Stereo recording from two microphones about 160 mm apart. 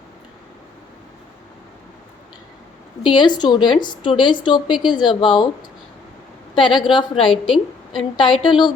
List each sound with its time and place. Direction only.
3.0 s a woman's voice: 30° left (ahead or behind)
6.5 s a woman's voice: 30° left (ahead or behind)